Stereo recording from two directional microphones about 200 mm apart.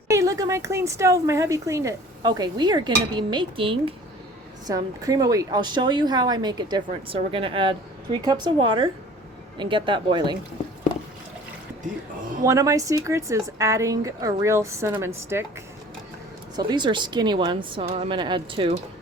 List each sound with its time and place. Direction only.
0.1 s a woman's voice: 15° right (ahead or behind)
12.5 s speech: 15° right (ahead or behind)
16.6 s a woman's voice: 20° right (ahead or behind)